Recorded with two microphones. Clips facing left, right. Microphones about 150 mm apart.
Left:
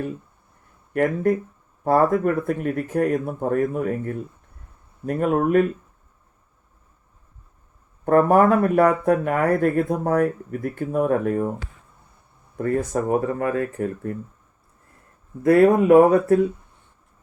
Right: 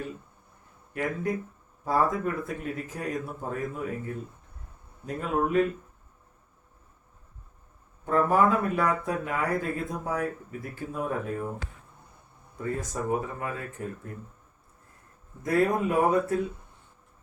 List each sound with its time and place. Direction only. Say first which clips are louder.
1.8 s speech: left 8 dB; 60° left (ahead or behind)
8.0 s speech: left 7 dB; 60° left (ahead or behind)
12.5 s speech: left 9 dB; 60° left (ahead or behind)
15.4 s speech: left 11 dB; 65° left (ahead or behind)